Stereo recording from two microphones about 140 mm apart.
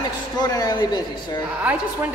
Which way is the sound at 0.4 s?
30° left (ahead or behind).